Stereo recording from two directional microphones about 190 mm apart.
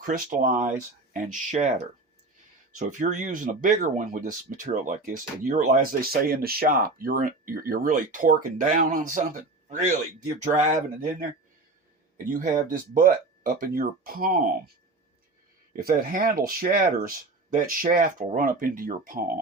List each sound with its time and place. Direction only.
0.0 s speech: 45° right (ahead or behind)
15.7 s speech: 50° right (ahead or behind)